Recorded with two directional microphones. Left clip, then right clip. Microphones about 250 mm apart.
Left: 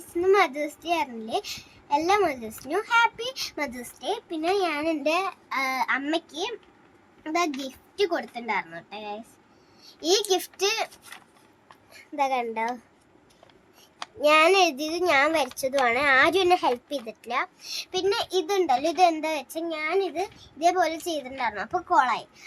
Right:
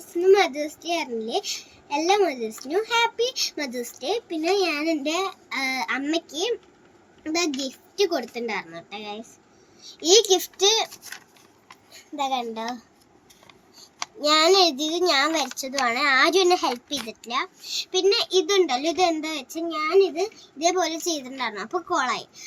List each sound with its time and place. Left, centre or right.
0.2 s a child's voice: centre
7.3 s a child's voice: centre
12.1 s a child's voice: centre
14.3 s a child's voice: centre